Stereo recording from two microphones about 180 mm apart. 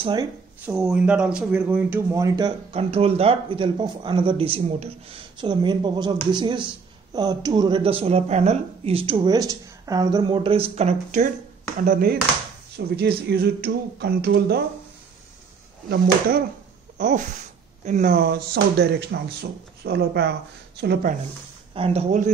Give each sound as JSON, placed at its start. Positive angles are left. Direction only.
{"t": 0.0, "sound": "a woman's voice", "side_deg": -25}
{"t": 0.7, "sound": "speech", "side_deg": -5}
{"t": 2.7, "sound": "a woman's voice", "side_deg": -35}
{"t": 12.7, "sound": "speech", "side_deg": -70}
{"t": 13.3, "sound": "a sound", "side_deg": -60}
{"t": 17.0, "sound": "speech", "side_deg": -45}
{"t": 17.8, "sound": "a sound", "side_deg": -45}
{"t": 21.7, "sound": "speech", "side_deg": -35}